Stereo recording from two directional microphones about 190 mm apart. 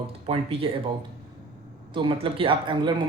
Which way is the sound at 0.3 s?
30° right (ahead or behind).